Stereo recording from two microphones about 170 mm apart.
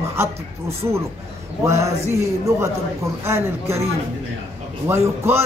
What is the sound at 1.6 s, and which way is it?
A man's voice, 15° right (ahead or behind).